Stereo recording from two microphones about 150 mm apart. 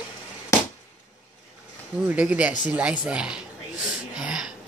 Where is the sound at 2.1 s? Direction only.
10° right (ahead or behind).